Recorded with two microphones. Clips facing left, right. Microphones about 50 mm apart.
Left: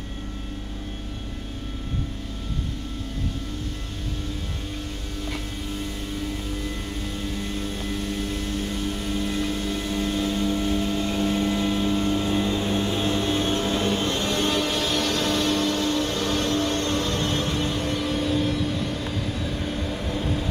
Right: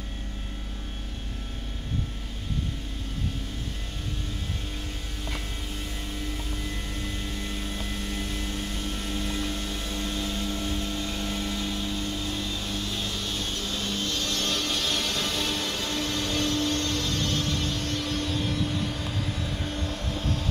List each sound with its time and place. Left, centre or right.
7.9 s vehicle: centre
15.4 s vehicle: left; by 20.4 s centre